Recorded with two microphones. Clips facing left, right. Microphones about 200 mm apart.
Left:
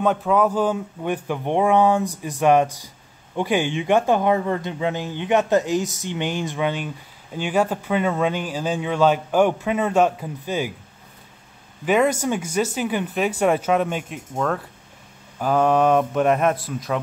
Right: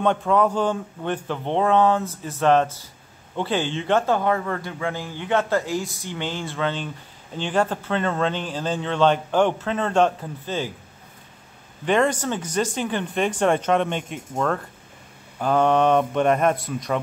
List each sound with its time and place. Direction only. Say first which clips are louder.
0.0 s a man's voice: left 1 dB; 5° left (ahead or behind)
11.8 s speech: left 2 dB; 5° left (ahead or behind)